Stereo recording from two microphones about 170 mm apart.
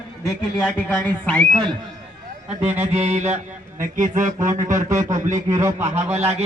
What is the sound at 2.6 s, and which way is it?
Mantra, 40° right (ahead or behind).